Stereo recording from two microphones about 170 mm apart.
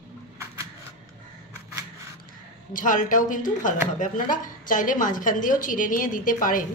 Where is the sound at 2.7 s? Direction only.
50° left (ahead or behind).